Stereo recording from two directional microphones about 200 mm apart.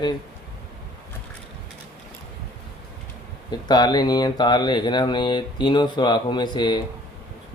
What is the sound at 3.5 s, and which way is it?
Speech, 20° left (ahead or behind).